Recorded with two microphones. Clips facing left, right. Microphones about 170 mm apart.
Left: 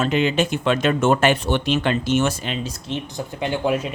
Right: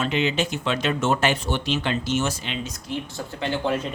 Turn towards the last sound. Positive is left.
turn(degrees=15)  # may be behind; listen again after turning